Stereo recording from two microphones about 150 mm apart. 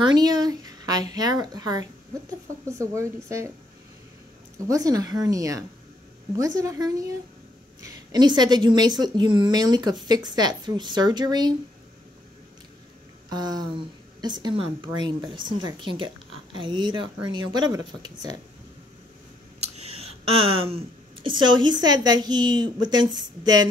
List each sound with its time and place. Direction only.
0.0 s a woman's voice: 25° right (ahead or behind)
4.6 s a woman's voice: 25° right (ahead or behind)
13.3 s speech: 25° right (ahead or behind)
19.6 s speech: 45° right (ahead or behind); by 23.7 s 25° right (ahead or behind)